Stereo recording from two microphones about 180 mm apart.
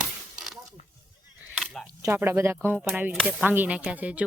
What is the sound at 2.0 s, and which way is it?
Speech, 15° right (ahead or behind).